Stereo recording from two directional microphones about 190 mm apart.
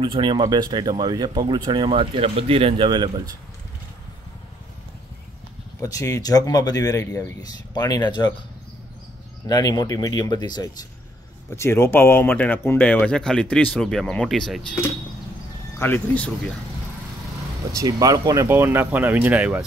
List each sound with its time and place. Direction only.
0.0 s speech: 25° right (ahead or behind)
5.8 s speech: 15° left (ahead or behind)
9.5 s speech: 20° left (ahead or behind); by 14.8 s centre (ahead or behind)
15.8 s speech: 10° left (ahead or behind)
17.7 s speech: 20° right (ahead or behind)